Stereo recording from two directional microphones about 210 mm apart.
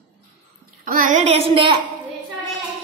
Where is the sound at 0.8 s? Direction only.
40° right (ahead or behind).